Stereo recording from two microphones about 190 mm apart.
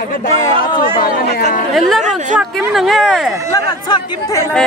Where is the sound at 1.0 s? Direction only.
50° left (ahead or behind).